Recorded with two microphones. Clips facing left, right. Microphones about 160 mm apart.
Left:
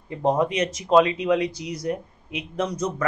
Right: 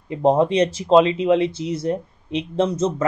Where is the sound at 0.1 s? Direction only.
20° right (ahead or behind).